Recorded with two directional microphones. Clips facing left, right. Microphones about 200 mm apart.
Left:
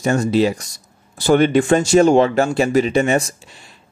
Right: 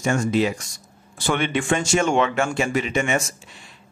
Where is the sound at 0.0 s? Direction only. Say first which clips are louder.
Left 4 dB; 35° left (ahead or behind).